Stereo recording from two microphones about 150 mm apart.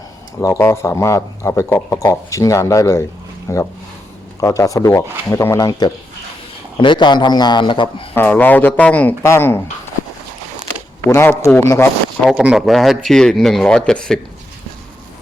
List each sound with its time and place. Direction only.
0.4 s a man's voice: 20° left (ahead or behind)
8.1 s speech: 10° left (ahead or behind)
11.0 s speech: 15° left (ahead or behind)
12.2 s speech: 5° right (ahead or behind)